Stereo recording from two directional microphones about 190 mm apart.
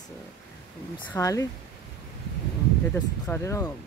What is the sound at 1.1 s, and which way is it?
Speech, 15° left (ahead or behind).